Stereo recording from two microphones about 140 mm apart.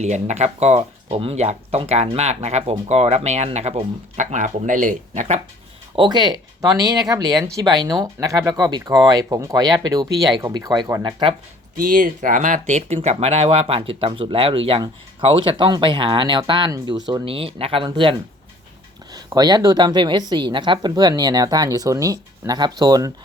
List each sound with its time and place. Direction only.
0.0 s speech: 55° right (ahead or behind)
6.0 s speech: 30° right (ahead or behind)
11.0 s speech: 35° right (ahead or behind)
11.8 s speech: 80° right; by 23.1 s 25° right (ahead or behind)